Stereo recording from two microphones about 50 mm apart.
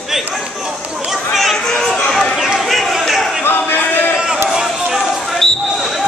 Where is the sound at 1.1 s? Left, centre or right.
Centre.